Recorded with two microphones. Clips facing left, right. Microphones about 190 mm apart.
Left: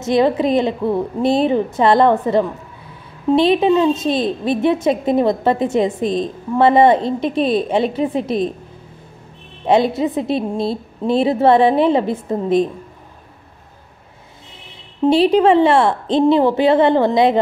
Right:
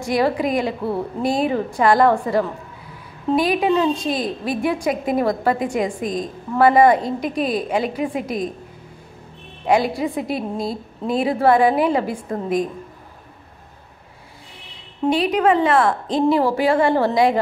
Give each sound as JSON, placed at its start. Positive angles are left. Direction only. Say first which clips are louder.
{"t": 0.0, "sound": "a woman's voice", "louder": "left 4 dB", "side_deg": 25}
{"t": 9.7, "sound": "a woman's voice", "louder": "left 4 dB", "side_deg": 25}
{"t": 15.0, "sound": "a woman's voice", "louder": "left 5 dB", "side_deg": 30}